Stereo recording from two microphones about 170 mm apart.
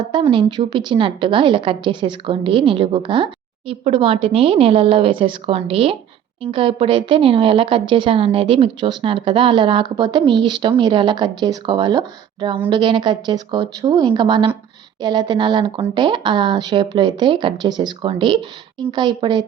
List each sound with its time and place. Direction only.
0.0 s a woman's voice: 30° right (ahead or behind)